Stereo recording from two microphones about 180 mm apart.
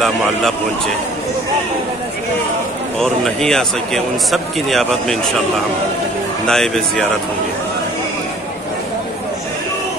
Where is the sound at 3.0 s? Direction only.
5° left (ahead or behind).